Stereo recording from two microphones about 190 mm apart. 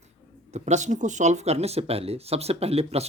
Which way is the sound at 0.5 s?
35° right (ahead or behind).